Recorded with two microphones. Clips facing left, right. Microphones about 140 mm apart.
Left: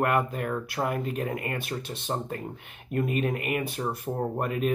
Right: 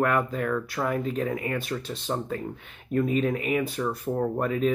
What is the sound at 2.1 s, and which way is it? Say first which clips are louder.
Speech: right 1 dB; 35° left (ahead or behind).